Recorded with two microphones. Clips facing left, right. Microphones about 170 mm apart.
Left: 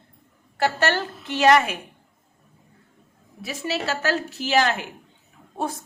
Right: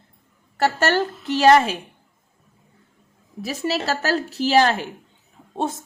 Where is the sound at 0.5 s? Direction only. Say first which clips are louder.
Right 3 dB; 40° right (ahead or behind).